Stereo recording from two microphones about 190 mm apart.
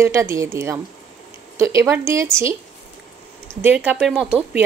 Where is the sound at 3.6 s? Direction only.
5° right (ahead or behind).